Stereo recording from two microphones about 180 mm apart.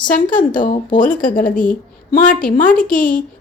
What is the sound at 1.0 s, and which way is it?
A woman's voice, 45° left (ahead or behind).